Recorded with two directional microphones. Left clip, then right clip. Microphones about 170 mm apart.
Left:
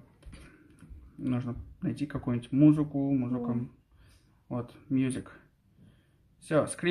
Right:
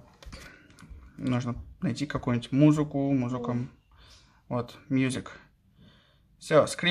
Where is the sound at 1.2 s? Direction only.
25° right (ahead or behind).